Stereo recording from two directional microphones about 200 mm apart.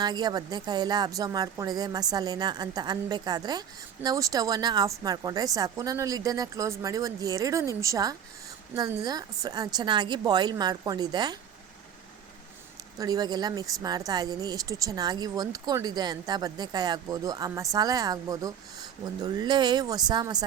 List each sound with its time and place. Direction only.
0.0 s speech: 20° right (ahead or behind)
13.0 s speech: 20° right (ahead or behind)